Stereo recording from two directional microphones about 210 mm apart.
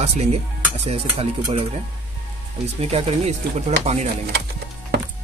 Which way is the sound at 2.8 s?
30° right (ahead or behind).